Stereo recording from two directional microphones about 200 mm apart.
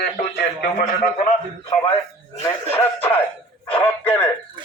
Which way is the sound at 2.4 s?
10° left (ahead or behind).